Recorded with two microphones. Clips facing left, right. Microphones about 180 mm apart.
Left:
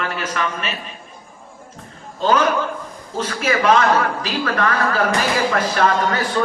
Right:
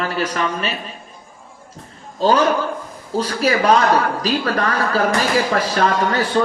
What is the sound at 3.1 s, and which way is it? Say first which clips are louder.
Speech: right 3 dB; 35° right (ahead or behind).